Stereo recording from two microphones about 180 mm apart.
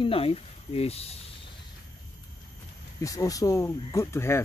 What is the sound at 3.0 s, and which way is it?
Speech, 20° left (ahead or behind).